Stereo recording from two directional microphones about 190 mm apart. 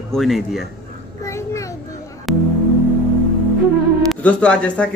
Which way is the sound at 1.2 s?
15° left (ahead or behind).